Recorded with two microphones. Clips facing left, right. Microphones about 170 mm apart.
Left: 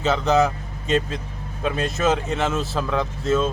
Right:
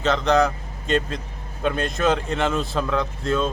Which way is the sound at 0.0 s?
5° left (ahead or behind).